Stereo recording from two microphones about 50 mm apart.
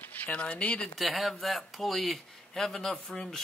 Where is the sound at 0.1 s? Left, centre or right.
Left.